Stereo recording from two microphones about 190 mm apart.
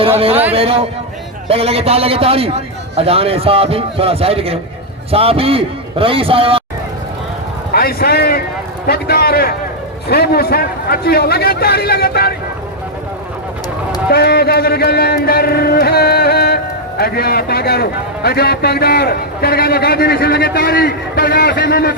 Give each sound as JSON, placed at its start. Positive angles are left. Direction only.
{"t": 0.5, "sound": "a man's voice", "side_deg": -30}
{"t": 7.7, "sound": "a man's voice", "side_deg": 55}
{"t": 14.1, "sound": "a man's voice", "side_deg": 55}